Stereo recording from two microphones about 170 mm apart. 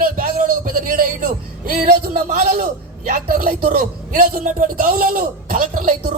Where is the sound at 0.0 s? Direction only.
55° right (ahead or behind).